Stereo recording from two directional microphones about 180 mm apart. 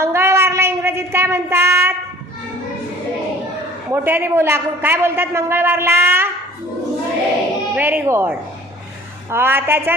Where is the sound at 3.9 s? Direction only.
15° right (ahead or behind).